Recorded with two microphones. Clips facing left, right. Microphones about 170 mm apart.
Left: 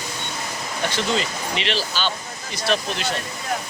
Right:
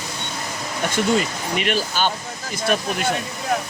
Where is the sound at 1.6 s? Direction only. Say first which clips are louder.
Right 4 dB; 50° right (ahead or behind).